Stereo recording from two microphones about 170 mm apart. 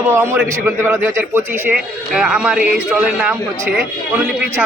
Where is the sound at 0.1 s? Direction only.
15° right (ahead or behind).